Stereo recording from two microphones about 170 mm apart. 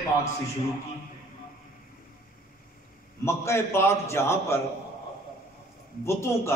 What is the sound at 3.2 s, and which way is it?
A man's voice, 15° left (ahead or behind).